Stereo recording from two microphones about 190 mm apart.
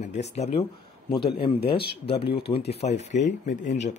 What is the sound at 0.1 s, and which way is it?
A man's voice, 35° left (ahead or behind).